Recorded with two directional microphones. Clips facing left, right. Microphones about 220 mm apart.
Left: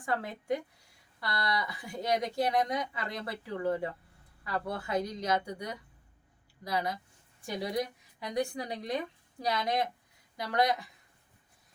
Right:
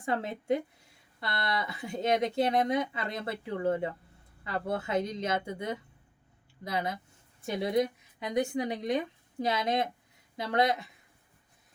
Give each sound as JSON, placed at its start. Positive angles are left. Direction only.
{"t": 0.0, "sound": "speech", "side_deg": -25}